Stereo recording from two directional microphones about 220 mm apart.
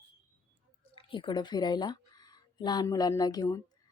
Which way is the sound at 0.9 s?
25° left (ahead or behind).